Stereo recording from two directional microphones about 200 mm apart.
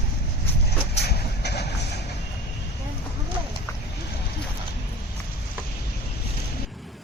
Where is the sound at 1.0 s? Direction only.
55° left (ahead or behind).